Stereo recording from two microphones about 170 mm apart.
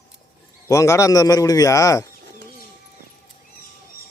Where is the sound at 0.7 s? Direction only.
20° left (ahead or behind).